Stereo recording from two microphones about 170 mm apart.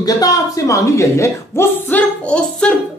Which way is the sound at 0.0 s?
20° left (ahead or behind).